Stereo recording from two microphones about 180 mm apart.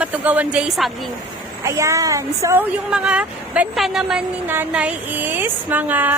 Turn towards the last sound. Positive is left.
turn(degrees=-10)  # may be behind; listen again after turning